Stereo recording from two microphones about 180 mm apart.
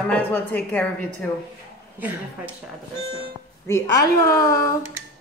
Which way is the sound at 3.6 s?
15° left (ahead or behind).